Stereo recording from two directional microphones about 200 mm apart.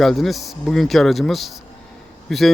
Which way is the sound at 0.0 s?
Centre (ahead or behind).